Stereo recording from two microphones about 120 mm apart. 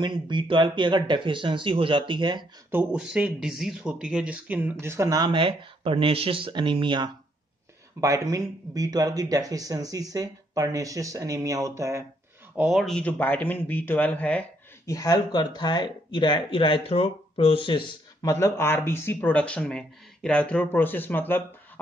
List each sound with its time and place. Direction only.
0.0 s speech: 40° right (ahead or behind)
2.7 s speech: 10° right (ahead or behind)
5.2 s speech: 45° right (ahead or behind)
8.0 s speech: 30° right (ahead or behind)
12.6 s speech: centre (ahead or behind)
14.9 s speech: 30° left (ahead or behind)
18.3 s speech: 20° left (ahead or behind)